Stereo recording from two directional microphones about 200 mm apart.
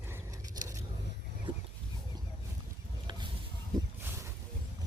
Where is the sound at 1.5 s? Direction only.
25° right (ahead or behind).